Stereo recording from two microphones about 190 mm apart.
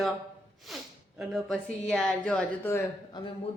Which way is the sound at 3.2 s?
20° left (ahead or behind).